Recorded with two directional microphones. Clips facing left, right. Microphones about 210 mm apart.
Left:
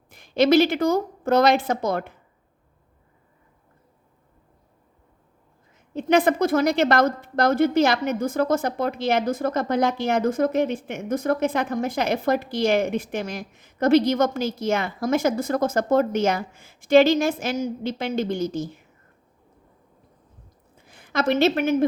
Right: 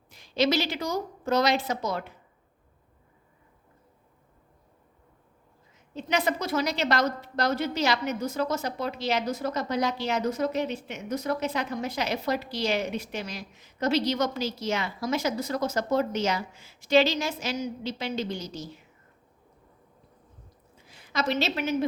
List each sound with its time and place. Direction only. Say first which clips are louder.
0.1 s a woman's voice: left 8 dB; 55° left (ahead or behind)
5.9 s a woman's voice: left 8 dB; 50° left (ahead or behind)
20.7 s a woman's voice: left 5 dB; 50° left (ahead or behind)